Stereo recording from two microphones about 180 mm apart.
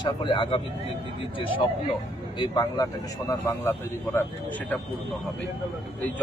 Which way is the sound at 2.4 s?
25° left (ahead or behind).